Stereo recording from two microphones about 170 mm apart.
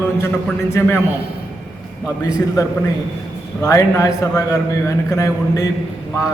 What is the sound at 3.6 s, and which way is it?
A man's voice, 20° left (ahead or behind).